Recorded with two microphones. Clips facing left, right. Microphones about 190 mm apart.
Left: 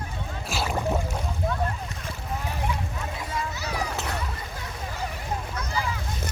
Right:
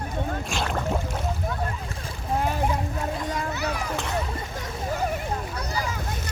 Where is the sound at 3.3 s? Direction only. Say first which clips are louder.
Right 4 dB; 55° right (ahead or behind).